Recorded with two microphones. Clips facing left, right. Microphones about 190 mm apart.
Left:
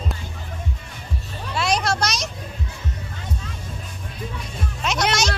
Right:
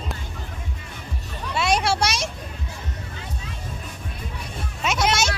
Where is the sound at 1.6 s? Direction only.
5° right (ahead or behind).